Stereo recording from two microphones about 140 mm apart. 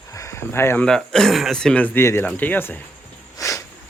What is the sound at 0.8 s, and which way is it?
Speech, 5° left (ahead or behind).